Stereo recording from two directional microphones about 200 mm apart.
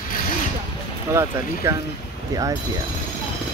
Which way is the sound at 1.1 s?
15° right (ahead or behind).